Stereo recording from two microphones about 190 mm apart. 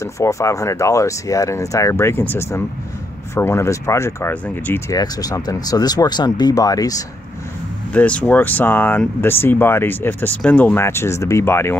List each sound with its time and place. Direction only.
0.0 s speech: 15° left (ahead or behind)
7.9 s speech: 5° left (ahead or behind)